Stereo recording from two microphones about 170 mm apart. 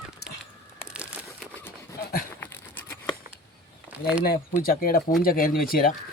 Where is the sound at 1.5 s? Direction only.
15° left (ahead or behind).